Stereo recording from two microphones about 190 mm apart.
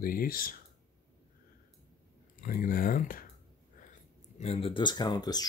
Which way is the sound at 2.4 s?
45° left (ahead or behind).